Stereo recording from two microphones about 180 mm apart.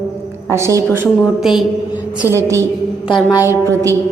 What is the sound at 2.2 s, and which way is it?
Speech, 15° right (ahead or behind).